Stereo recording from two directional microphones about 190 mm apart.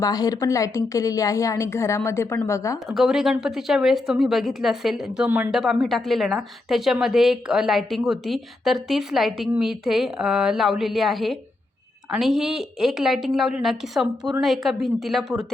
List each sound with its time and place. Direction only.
0.0 s a woman's voice: 20° left (ahead or behind)
2.9 s a woman's voice: centre (ahead or behind)